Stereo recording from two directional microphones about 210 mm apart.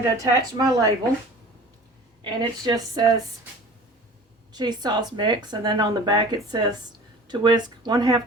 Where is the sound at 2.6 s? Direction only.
20° right (ahead or behind).